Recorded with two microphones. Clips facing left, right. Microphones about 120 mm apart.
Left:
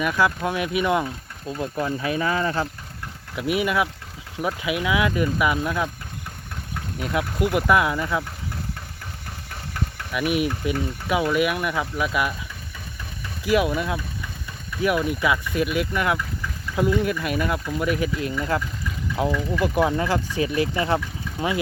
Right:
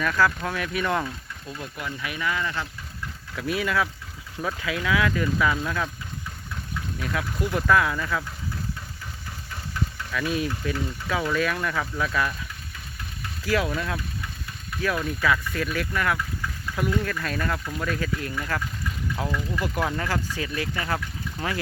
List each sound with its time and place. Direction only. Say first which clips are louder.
0.0 s speech: left 2 dB; 15° left (ahead or behind)
1.5 s speech: left 9 dB; 30° left (ahead or behind)
3.3 s speech: left 3 dB; 20° left (ahead or behind)
7.0 s speech: left 5 dB; 20° left (ahead or behind)
10.1 s speech: left 5 dB; 20° left (ahead or behind)
13.4 s speech: left 4 dB; 15° left (ahead or behind)